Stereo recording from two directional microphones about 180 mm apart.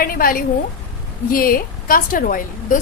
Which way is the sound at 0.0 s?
55° left (ahead or behind).